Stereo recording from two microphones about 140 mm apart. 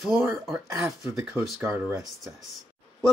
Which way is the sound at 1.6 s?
20° right (ahead or behind).